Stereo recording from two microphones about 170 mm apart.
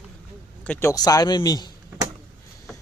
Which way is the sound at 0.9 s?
20° left (ahead or behind).